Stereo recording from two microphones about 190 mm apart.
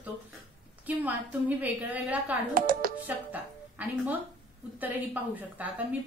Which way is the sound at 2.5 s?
50° right (ahead or behind).